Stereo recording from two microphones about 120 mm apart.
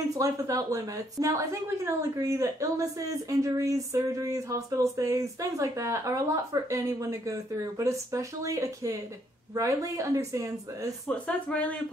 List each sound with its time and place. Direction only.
0.1 s a woman's voice: 30° right (ahead or behind)
11.1 s speech: 10° left (ahead or behind)